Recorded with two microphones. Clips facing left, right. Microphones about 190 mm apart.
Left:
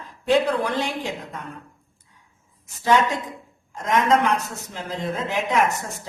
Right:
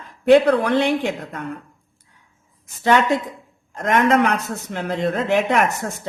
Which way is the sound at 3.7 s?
65° right (ahead or behind).